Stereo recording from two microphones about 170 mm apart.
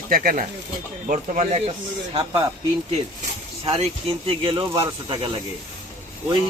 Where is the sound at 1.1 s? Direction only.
45° right (ahead or behind).